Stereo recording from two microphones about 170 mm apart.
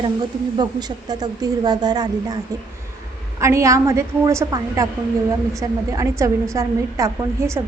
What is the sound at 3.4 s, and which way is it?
A woman's voice, 15° right (ahead or behind).